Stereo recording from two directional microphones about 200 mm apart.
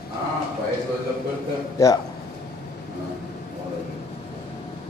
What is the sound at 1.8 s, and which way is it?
Speech, 15° left (ahead or behind).